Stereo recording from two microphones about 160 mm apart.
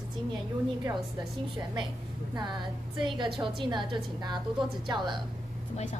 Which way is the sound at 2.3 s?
30° right (ahead or behind).